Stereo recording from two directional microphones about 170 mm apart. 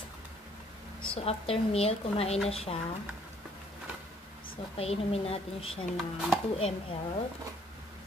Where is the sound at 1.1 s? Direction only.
35° left (ahead or behind).